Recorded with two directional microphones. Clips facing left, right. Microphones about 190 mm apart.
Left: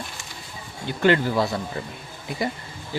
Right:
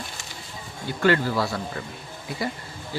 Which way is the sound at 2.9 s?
20° left (ahead or behind).